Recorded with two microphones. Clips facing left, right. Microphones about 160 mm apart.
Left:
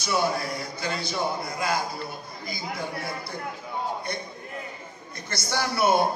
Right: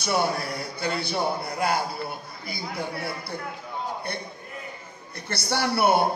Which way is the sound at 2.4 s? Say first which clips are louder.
Even; 60° right (ahead or behind).